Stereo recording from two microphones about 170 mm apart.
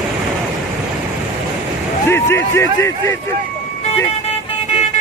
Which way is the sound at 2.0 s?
15° left (ahead or behind).